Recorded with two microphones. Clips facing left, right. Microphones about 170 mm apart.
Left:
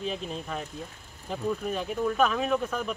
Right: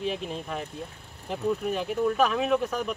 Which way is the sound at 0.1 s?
10° right (ahead or behind).